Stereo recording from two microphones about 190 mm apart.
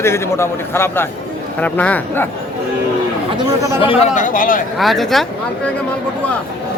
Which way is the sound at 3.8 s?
30° left (ahead or behind).